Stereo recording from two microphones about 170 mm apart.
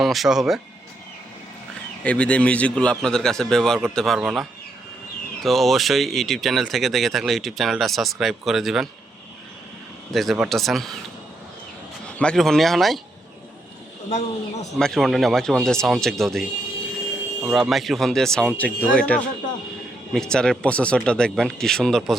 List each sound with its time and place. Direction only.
0.0 s speech: centre (ahead or behind)
2.0 s speech: 5° left (ahead or behind)
10.1 s speech: centre (ahead or behind)
12.0 s speech: 5° left (ahead or behind)
14.1 s speech: 40° left (ahead or behind)
14.8 s a man's voice: centre (ahead or behind)